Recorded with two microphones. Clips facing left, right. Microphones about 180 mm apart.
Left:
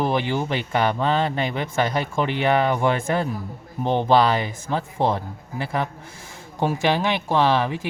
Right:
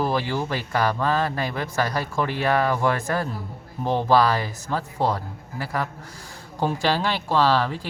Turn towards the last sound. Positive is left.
turn(degrees=20)  # may be behind; listen again after turning